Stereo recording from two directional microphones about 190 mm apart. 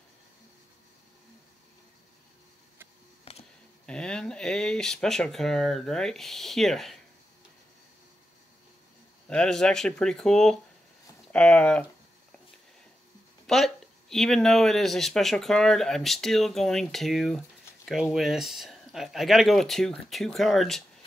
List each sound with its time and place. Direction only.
3.3 s a sound: 30° left (ahead or behind)
3.8 s speech: 5° left (ahead or behind)
9.3 s speech: 5° left (ahead or behind)
13.5 s speech: centre (ahead or behind)